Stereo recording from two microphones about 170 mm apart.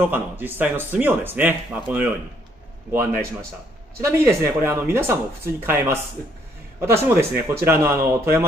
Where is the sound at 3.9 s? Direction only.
15° right (ahead or behind).